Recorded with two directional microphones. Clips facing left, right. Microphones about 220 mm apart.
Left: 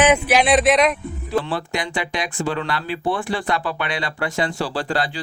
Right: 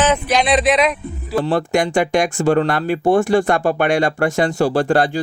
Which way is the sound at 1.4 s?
45° right (ahead or behind).